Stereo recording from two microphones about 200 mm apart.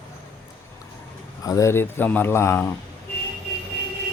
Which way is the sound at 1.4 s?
15° left (ahead or behind).